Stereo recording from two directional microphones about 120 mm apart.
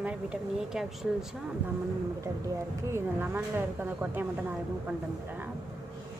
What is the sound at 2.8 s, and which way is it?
Speech, 20° right (ahead or behind).